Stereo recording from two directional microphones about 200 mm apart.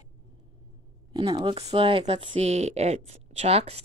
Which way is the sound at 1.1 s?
20° right (ahead or behind).